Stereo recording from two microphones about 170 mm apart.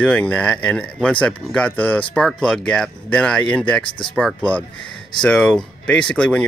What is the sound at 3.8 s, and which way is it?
Speech, 30° left (ahead or behind).